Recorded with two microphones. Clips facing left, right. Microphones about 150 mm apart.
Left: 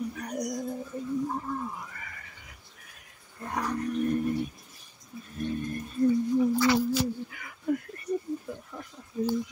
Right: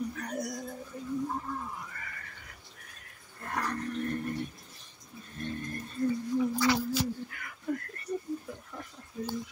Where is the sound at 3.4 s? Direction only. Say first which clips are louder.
Left 4 dB; 10° left (ahead or behind).